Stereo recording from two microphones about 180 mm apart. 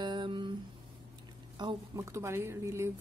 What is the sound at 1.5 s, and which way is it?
A woman's voice, 20° right (ahead or behind).